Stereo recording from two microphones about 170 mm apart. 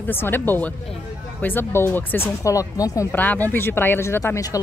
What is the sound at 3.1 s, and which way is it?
Speech, 10° left (ahead or behind).